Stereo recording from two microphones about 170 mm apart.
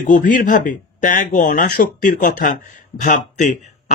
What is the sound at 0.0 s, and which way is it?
Speech, 50° left (ahead or behind).